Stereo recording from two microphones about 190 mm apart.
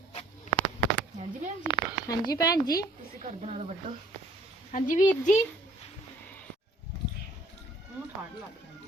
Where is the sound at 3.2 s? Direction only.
35° right (ahead or behind).